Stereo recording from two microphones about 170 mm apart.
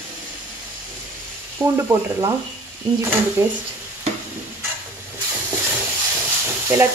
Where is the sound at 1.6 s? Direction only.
15° right (ahead or behind).